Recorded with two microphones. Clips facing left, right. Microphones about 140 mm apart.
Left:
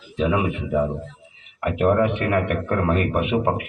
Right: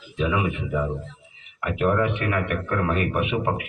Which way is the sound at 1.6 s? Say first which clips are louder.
Left 3 dB; 50° left (ahead or behind).